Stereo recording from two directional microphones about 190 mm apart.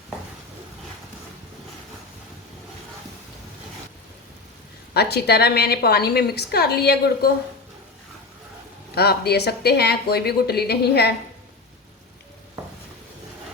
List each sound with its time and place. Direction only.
4.9 s a woman's voice: 60° left (ahead or behind)
9.0 s a woman's voice: 55° left (ahead or behind)